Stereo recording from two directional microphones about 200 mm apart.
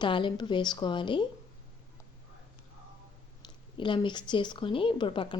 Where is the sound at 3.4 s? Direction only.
25° left (ahead or behind).